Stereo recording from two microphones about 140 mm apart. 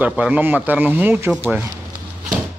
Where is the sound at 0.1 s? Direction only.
10° right (ahead or behind).